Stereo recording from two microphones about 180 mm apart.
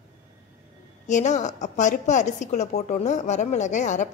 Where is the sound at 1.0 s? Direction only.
40° left (ahead or behind).